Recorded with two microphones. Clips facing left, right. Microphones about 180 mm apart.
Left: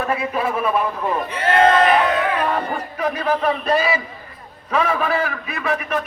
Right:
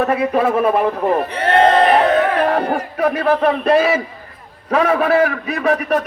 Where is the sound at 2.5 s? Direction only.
70° right (ahead or behind).